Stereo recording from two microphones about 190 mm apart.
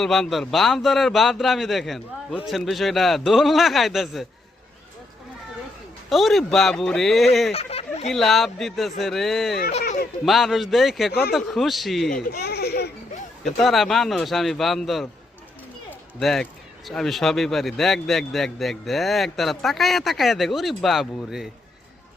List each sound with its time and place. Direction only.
0.0 s speech: centre (ahead or behind)
6.1 s speech: centre (ahead or behind)
7.5 s a sound: 30° left (ahead or behind)
8.1 s speech: centre (ahead or behind)
9.8 s speech: 50° left (ahead or behind)
10.2 s speech: centre (ahead or behind)
12.3 s speech: 55° left (ahead or behind)
13.4 s speech: centre (ahead or behind)